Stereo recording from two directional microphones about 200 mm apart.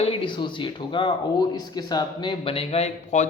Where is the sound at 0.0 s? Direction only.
25° left (ahead or behind).